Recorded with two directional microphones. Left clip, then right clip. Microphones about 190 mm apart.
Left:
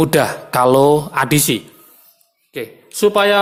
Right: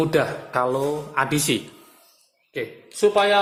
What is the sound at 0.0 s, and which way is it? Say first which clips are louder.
Speech: left 6 dB; 40° left (ahead or behind).